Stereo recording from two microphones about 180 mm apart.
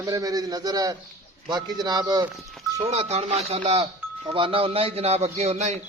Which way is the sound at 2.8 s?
35° right (ahead or behind).